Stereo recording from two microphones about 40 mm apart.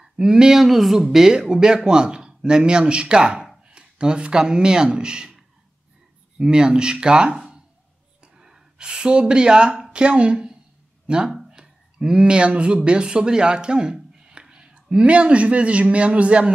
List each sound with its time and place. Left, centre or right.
0.0 s speech: centre
0.7 s speech: centre; by 7.3 s right
7.3 s a sound: centre
9.9 s speech: right